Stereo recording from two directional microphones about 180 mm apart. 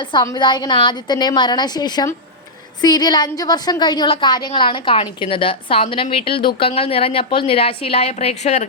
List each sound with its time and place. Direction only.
0.0 s a woman's voice: 25° left (ahead or behind)